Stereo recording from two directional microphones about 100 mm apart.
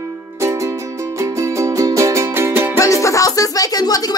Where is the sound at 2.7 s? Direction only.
30° left (ahead or behind).